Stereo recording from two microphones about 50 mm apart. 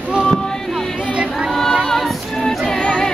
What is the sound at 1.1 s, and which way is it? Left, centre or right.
Music, right.